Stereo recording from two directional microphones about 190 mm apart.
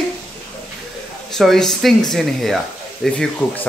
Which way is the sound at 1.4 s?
Centre (ahead or behind).